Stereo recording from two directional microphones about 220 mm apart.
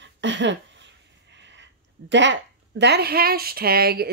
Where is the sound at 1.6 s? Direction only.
55° right (ahead or behind).